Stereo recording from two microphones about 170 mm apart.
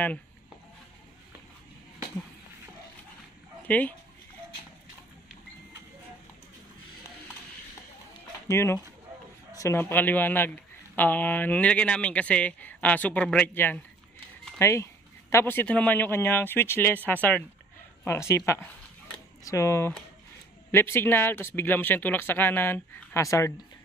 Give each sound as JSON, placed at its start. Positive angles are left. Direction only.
{"t": 3.6, "sound": "speech", "side_deg": 10}
{"t": 8.5, "sound": "a man's voice", "side_deg": 15}